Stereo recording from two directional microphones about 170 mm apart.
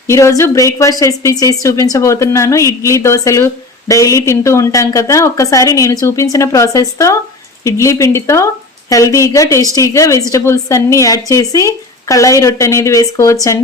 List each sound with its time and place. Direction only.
0.1 s a woman's voice: 15° left (ahead or behind)